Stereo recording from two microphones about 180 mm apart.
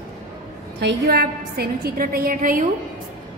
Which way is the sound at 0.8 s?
65° right (ahead or behind).